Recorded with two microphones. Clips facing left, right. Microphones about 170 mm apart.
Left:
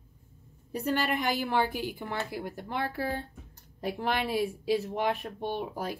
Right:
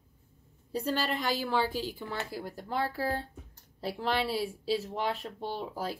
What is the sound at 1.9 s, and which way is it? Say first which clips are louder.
Speech: left 2 dB; 55° left (ahead or behind).